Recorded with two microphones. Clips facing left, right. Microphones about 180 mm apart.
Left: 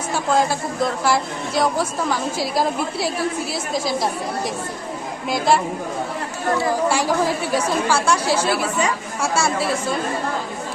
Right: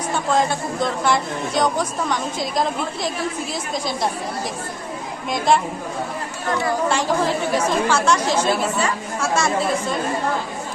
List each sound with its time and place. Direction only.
0.1 s a woman's voice: 5° left (ahead or behind)
5.5 s a woman's voice: 5° left (ahead or behind)
6.8 s a woman's voice: 10° left (ahead or behind)